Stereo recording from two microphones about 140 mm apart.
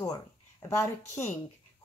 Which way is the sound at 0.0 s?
25° left (ahead or behind).